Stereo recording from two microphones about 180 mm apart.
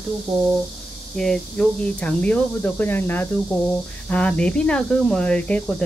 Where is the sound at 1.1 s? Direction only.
Centre (ahead or behind).